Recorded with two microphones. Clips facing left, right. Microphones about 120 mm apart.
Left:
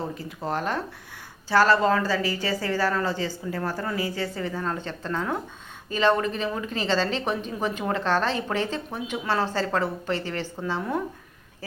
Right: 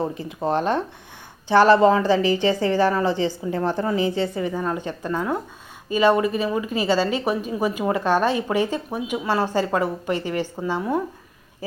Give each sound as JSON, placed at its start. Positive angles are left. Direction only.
{"t": 0.1, "sound": "a woman's voice", "side_deg": -20}